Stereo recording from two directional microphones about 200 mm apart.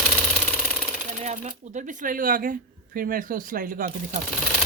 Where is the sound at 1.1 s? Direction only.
35° right (ahead or behind).